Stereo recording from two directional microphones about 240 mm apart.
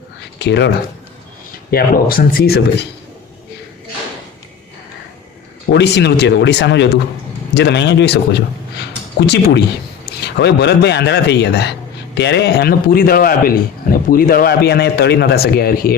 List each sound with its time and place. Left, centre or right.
0.3 s speech: left
1.7 s a man's voice: left
5.7 s a man's voice: left